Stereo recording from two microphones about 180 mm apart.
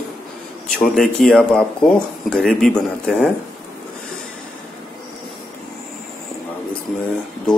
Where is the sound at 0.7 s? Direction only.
5° left (ahead or behind).